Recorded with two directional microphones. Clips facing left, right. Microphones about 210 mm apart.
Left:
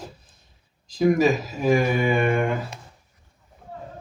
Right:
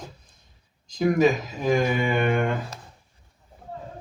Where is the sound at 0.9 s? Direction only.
5° left (ahead or behind).